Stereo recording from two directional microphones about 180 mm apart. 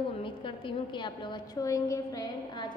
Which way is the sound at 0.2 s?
25° left (ahead or behind).